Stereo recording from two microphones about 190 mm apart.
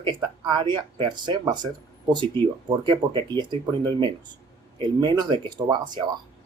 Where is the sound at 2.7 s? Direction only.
25° right (ahead or behind).